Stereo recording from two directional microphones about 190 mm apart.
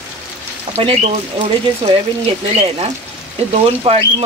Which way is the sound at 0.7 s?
30° right (ahead or behind).